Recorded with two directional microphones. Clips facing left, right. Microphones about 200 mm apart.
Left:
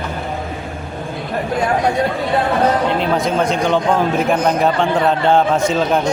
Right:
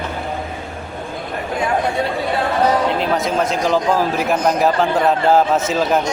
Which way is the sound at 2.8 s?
Centre (ahead or behind).